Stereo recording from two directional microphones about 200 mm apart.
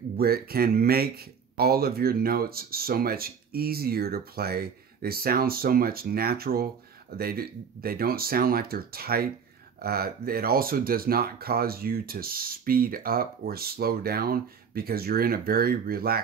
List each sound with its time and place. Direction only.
0.2 s speech: 50° right (ahead or behind)